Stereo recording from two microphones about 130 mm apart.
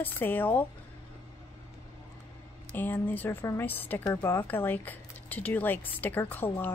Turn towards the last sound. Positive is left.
turn(degrees=15)  # may be behind; listen again after turning